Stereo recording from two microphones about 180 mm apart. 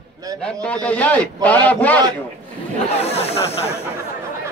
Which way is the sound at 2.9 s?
35° left (ahead or behind).